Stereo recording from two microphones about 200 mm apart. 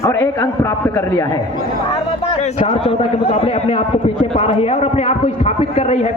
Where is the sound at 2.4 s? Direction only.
35° left (ahead or behind).